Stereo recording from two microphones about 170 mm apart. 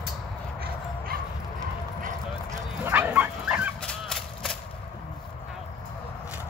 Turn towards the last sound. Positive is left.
turn(degrees=5)  # may be behind; listen again after turning